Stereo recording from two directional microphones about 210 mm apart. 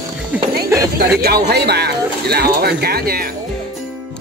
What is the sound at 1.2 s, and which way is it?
Speech, 50° right (ahead or behind).